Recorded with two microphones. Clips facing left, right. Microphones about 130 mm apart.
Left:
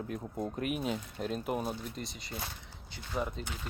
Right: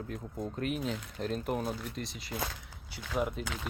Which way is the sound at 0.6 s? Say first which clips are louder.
Right 1 dB; 10° left (ahead or behind).